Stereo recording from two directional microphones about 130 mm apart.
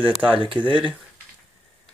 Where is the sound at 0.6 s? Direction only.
40° right (ahead or behind).